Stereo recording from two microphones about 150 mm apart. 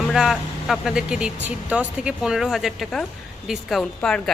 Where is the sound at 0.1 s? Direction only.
Centre (ahead or behind).